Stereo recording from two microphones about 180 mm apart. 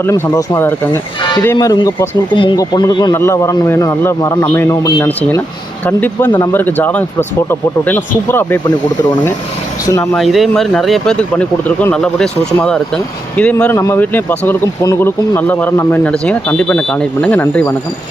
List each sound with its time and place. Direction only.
0.0 s speech: 15° left (ahead or behind)
1.2 s speech: 25° left (ahead or behind)
10.0 s speech: 5° left (ahead or behind)